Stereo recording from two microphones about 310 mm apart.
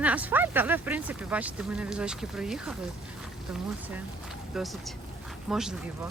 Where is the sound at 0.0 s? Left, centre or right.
Centre.